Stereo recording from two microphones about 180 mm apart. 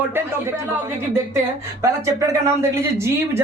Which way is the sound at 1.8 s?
15° right (ahead or behind).